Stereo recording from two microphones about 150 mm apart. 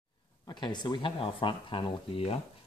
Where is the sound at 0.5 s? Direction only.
30° left (ahead or behind).